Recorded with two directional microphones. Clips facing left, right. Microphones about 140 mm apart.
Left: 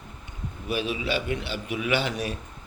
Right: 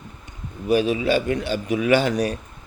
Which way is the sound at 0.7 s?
40° right (ahead or behind).